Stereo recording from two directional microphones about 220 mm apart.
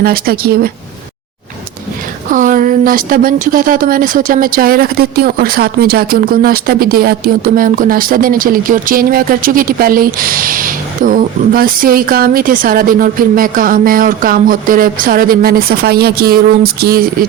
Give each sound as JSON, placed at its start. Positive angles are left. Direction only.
{"t": 0.0, "sound": "a woman's voice", "side_deg": -45}
{"t": 2.3, "sound": "speech", "side_deg": -35}